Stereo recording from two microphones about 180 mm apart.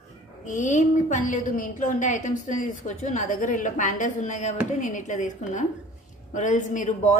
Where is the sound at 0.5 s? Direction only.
45° left (ahead or behind).